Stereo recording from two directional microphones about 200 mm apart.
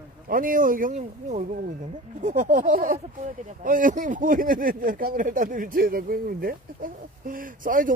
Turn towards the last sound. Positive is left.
turn(degrees=-45)  # may be behind; listen again after turning